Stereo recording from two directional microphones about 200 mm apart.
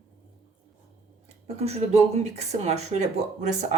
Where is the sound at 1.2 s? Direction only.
30° right (ahead or behind).